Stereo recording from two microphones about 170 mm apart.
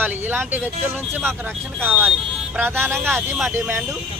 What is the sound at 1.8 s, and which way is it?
Speech, 10° right (ahead or behind).